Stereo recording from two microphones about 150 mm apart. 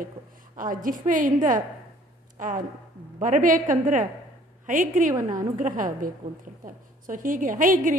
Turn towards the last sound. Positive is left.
turn(degrees=-60)  # may be behind; listen again after turning